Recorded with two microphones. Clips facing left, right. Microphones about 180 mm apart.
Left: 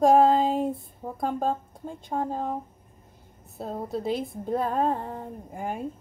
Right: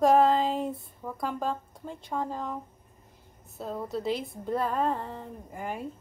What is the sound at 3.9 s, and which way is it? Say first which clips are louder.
A woman's voice: left 3 dB; 50° left (ahead or behind).